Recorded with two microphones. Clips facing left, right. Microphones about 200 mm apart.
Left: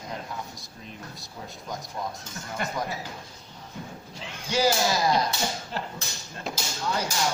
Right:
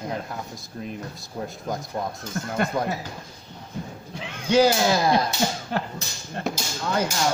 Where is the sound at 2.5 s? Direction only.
60° right (ahead or behind).